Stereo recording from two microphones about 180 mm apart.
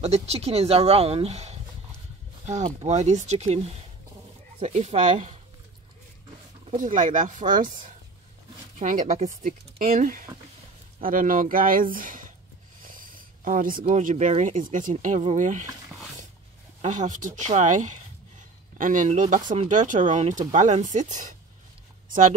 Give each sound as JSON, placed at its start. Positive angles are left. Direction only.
{"t": 0.0, "sound": "speech", "side_deg": -35}
{"t": 6.8, "sound": "speech", "side_deg": -45}
{"t": 8.7, "sound": "speech", "side_deg": -45}
{"t": 12.8, "sound": "a sound", "side_deg": -50}
{"t": 13.8, "sound": "speech", "side_deg": -40}
{"t": 16.8, "sound": "speech", "side_deg": -40}